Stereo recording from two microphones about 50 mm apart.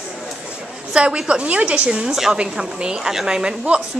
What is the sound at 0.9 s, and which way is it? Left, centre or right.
A woman's voice, centre.